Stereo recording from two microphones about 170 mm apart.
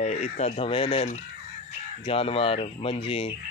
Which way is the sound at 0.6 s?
30° left (ahead or behind).